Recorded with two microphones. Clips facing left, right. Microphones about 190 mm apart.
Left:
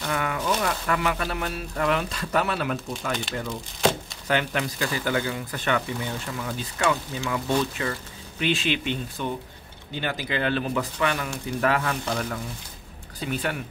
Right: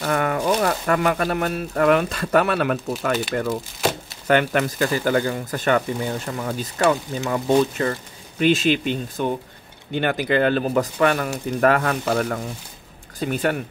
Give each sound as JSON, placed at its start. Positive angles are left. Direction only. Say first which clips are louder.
{"t": 0.0, "sound": "speech", "louder": "right 6 dB", "side_deg": -45}
{"t": 3.1, "sound": "speech", "louder": "right 7 dB", "side_deg": -5}
{"t": 4.3, "sound": "speech", "louder": "right 7 dB", "side_deg": -55}
{"t": 9.9, "sound": "speech", "louder": "right 8 dB", "side_deg": -60}